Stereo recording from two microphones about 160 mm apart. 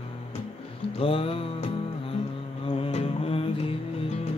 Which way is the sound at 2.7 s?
40° left (ahead or behind).